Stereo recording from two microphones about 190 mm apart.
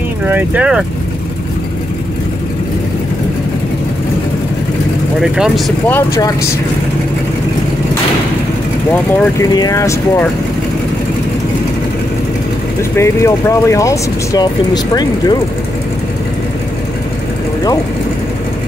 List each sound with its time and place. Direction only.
0.3 s speech: 10° right (ahead or behind)
5.2 s speech: 5° right (ahead or behind)
5.9 s speech: 15° left (ahead or behind)
9.1 s speech: 10° left (ahead or behind)
12.9 s speech: 15° left (ahead or behind)